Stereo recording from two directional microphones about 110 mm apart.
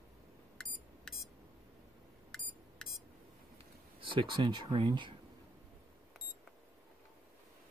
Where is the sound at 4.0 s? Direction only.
50° right (ahead or behind).